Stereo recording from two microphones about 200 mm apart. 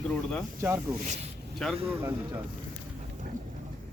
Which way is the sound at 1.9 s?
10° right (ahead or behind).